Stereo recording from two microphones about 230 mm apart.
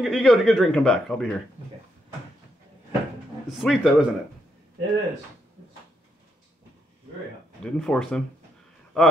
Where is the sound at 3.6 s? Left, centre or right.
Centre.